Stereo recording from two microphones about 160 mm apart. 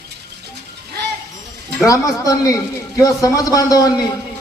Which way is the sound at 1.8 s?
20° left (ahead or behind).